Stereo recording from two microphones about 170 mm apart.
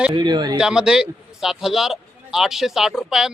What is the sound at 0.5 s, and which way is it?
A man's voice, 5° right (ahead or behind).